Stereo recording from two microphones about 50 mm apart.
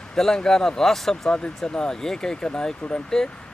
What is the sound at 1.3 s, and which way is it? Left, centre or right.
Speech, centre.